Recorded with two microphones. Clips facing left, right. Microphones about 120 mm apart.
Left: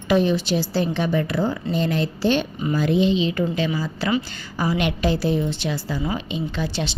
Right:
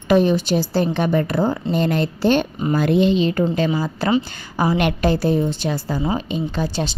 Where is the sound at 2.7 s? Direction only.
60° right (ahead or behind).